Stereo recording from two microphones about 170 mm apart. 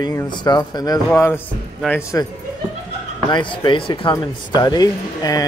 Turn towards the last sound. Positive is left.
turn(degrees=20)  # may be behind; listen again after turning